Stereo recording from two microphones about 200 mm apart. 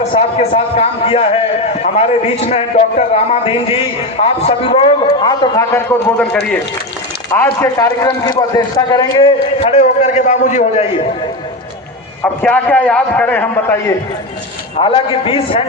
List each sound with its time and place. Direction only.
0.0 s a man's voice: 30° left (ahead or behind)
12.2 s a man's voice: 5° left (ahead or behind)
14.8 s a man's voice: 25° left (ahead or behind)